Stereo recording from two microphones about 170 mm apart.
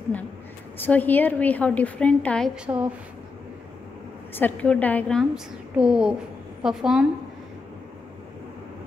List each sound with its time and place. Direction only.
0.7 s a woman's voice: 10° left (ahead or behind); by 2.9 s 5° right (ahead or behind)
4.3 s a woman's voice: 10° left (ahead or behind)